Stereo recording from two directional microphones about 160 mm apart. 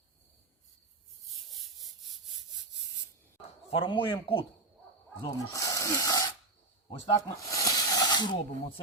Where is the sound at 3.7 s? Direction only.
30° left (ahead or behind).